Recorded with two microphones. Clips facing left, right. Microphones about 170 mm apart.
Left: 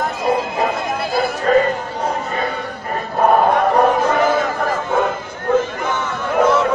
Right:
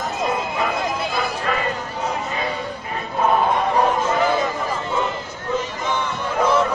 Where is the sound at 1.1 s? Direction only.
40° left (ahead or behind).